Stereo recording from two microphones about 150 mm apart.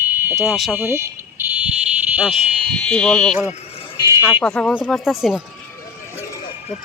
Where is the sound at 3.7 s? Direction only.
35° left (ahead or behind).